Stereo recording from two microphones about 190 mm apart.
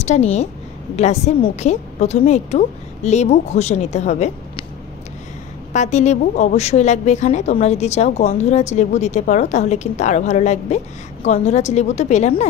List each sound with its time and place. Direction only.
0.0 s a woman's voice: 35° left (ahead or behind)
5.7 s a woman's voice: 35° left (ahead or behind)